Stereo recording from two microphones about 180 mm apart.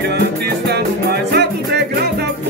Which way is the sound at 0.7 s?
65° right (ahead or behind).